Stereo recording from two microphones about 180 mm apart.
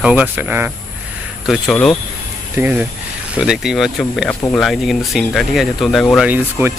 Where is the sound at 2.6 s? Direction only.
10° right (ahead or behind).